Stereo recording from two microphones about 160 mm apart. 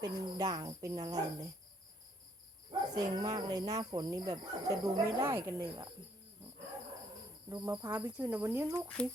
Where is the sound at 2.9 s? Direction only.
25° right (ahead or behind).